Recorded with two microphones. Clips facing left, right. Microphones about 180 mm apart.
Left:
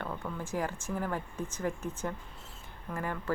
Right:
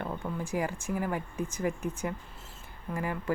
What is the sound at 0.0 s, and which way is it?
Speech, 15° right (ahead or behind).